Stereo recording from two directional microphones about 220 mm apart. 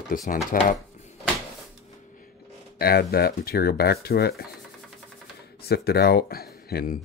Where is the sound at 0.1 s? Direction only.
40° left (ahead or behind).